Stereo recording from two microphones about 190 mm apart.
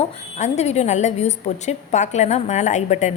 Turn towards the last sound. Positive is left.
turn(degrees=40)  # may be behind; listen again after turning